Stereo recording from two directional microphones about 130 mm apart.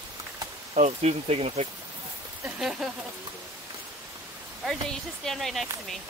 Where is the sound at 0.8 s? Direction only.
60° right (ahead or behind).